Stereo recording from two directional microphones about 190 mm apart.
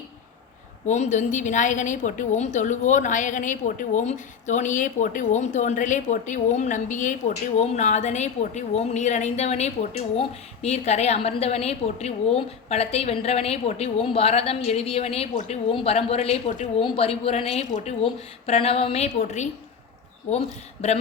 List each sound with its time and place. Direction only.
0.9 s a woman's voice: 40° left (ahead or behind)
20.8 s a woman's voice: 35° left (ahead or behind)